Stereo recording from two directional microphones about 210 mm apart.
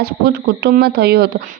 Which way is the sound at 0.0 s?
50° right (ahead or behind).